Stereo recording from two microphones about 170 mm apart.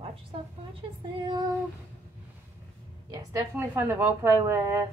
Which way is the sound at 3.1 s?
15° right (ahead or behind).